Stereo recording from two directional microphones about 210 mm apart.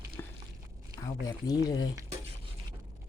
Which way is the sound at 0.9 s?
15° left (ahead or behind).